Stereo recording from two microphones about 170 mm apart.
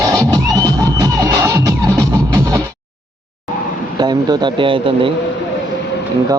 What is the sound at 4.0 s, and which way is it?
Speech, 25° right (ahead or behind).